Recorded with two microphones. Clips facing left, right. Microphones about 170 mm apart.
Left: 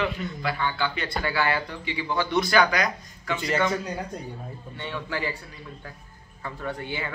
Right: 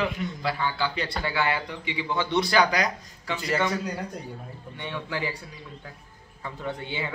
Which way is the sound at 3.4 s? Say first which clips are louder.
Left 1 dB; centre (ahead or behind).